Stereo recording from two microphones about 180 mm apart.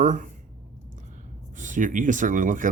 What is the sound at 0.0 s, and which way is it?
Speech, 45° right (ahead or behind).